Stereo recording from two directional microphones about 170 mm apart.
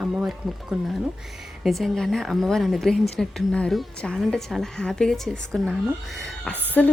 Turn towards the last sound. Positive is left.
turn(degrees=5)  # may be behind; listen again after turning